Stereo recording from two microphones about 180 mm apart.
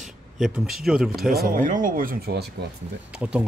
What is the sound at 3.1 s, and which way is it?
Speech, 5° right (ahead or behind).